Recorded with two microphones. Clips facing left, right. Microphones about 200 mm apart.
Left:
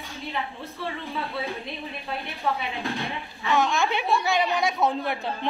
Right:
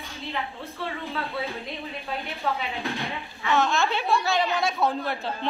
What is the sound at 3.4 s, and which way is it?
A woman's voice, 15° left (ahead or behind).